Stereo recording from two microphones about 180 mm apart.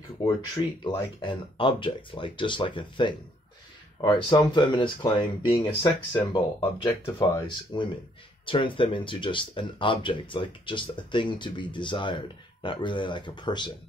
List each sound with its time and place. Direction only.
0.2 s speech: 25° left (ahead or behind)
6.6 s speech: 15° left (ahead or behind)